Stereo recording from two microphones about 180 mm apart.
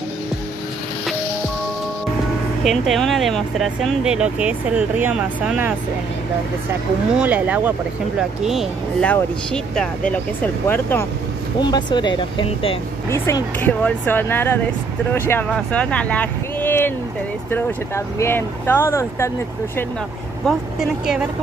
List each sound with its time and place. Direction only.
2.6 s speech: centre (ahead or behind)
11.6 s speech: 25° left (ahead or behind)
13.1 s speech: 10° left (ahead or behind)
20.4 s speech: 5° right (ahead or behind)